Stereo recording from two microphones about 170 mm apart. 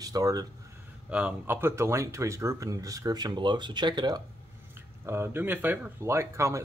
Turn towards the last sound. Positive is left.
turn(degrees=-15)  # may be behind; listen again after turning